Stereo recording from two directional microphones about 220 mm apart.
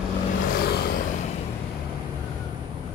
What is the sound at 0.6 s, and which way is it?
Vehicle, 45° left (ahead or behind).